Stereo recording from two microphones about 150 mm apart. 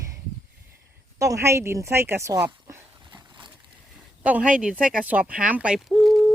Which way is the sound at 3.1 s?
30° right (ahead or behind).